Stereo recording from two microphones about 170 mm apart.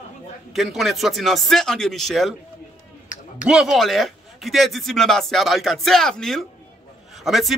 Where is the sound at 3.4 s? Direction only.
5° right (ahead or behind).